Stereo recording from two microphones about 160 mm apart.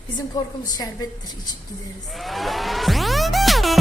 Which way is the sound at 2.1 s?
Centre (ahead or behind).